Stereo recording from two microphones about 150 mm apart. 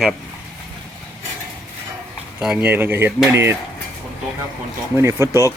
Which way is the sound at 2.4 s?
5° right (ahead or behind).